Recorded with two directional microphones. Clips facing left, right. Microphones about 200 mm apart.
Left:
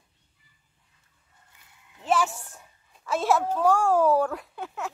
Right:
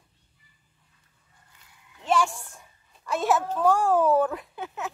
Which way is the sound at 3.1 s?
Centre (ahead or behind).